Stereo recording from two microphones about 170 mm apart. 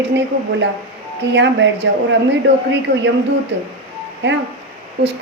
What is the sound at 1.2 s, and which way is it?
Speech, 90° right.